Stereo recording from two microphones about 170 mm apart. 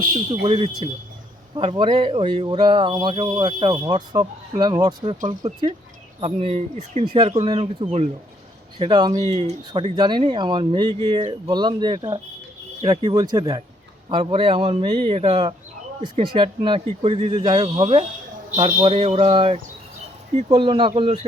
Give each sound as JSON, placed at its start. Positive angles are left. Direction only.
{"t": 0.4, "sound": "speech", "side_deg": -35}